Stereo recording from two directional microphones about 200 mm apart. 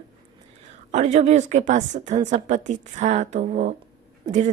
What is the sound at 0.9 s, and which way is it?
A woman's voice, 35° right (ahead or behind).